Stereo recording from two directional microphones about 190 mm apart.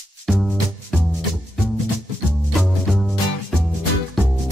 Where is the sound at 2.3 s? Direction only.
Centre (ahead or behind).